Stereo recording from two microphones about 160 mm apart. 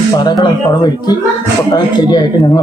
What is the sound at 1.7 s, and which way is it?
Speech, 25° left (ahead or behind).